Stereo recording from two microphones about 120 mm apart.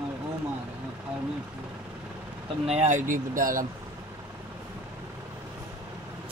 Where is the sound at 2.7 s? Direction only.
90° right.